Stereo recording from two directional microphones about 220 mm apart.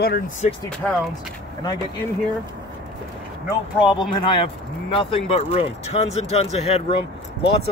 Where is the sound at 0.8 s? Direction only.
5° left (ahead or behind).